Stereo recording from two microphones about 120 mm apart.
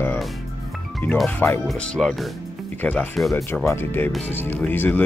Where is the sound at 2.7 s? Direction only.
15° left (ahead or behind).